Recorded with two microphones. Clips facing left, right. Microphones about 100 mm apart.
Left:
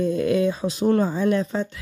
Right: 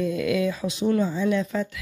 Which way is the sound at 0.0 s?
35° left (ahead or behind).